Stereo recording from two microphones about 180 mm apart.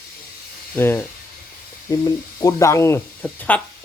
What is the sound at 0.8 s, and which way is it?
Speech, 15° left (ahead or behind).